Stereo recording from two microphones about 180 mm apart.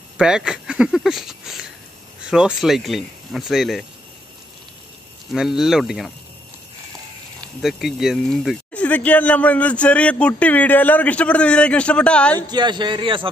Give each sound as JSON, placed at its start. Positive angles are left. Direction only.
{"t": 0.2, "sound": "speech", "side_deg": -5}
{"t": 5.3, "sound": "speech", "side_deg": 0}
{"t": 7.6, "sound": "speech", "side_deg": 0}
{"t": 12.4, "sound": "a man's voice", "side_deg": -25}